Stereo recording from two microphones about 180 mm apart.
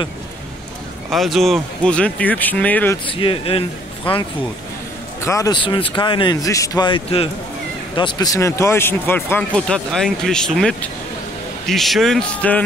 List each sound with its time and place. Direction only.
1.1 s speech: centre (ahead or behind)
3.1 s speech: 30° left (ahead or behind)
5.2 s speech: 15° left (ahead or behind)